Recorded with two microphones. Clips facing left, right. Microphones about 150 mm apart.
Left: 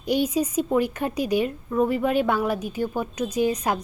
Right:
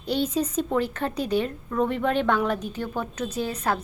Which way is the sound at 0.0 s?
10° left (ahead or behind).